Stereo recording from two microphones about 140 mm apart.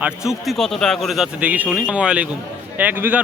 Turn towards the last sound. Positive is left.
turn(degrees=-15)  # may be behind; listen again after turning